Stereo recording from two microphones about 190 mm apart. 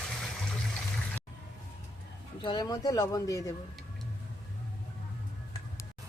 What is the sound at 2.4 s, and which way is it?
Speech, 20° left (ahead or behind).